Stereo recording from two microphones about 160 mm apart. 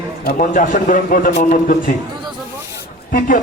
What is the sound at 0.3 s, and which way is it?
A man's voice, 55° left (ahead or behind).